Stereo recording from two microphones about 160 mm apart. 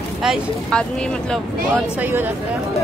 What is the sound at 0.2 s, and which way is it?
Speech, centre (ahead or behind).